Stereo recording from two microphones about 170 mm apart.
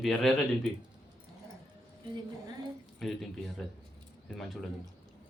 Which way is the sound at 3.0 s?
Centre (ahead or behind).